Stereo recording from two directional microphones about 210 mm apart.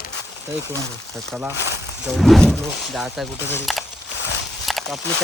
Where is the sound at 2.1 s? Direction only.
Centre (ahead or behind).